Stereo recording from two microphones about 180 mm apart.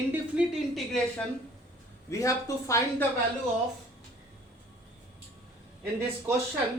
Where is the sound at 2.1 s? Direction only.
15° left (ahead or behind).